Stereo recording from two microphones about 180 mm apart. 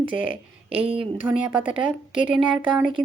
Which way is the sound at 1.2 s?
5° right (ahead or behind).